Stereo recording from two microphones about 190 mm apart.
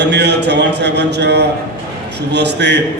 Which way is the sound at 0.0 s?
60° right (ahead or behind).